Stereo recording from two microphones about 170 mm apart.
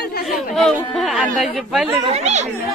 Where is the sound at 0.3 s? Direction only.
5° left (ahead or behind).